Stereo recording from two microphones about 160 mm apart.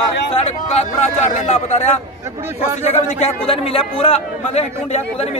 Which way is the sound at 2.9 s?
40° left (ahead or behind).